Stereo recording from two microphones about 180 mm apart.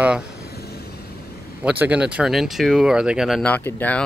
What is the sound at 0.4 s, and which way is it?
Vehicle, 60° left (ahead or behind).